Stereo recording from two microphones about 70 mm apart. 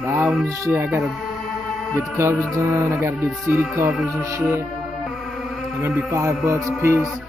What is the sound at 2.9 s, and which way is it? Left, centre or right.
A man's voice, right.